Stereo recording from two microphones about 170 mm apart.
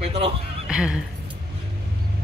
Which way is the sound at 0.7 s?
5° right (ahead or behind).